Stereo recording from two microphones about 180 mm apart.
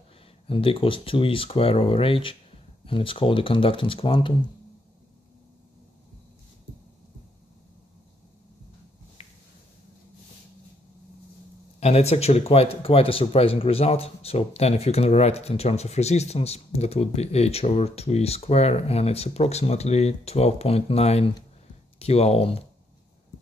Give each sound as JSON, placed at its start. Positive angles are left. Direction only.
{"t": 0.5, "sound": "speech", "side_deg": 30}
{"t": 9.2, "sound": "a sound", "side_deg": 35}
{"t": 11.8, "sound": "speech", "side_deg": 35}